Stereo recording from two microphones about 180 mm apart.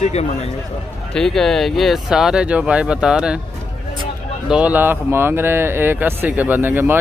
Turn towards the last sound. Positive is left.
turn(degrees=-10)  # may be behind; listen again after turning